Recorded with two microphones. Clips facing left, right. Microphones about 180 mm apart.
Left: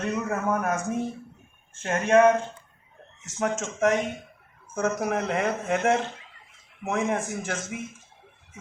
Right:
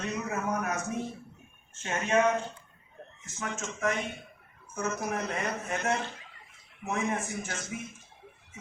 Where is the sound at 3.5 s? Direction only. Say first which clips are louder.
Left 6 dB; 85° left.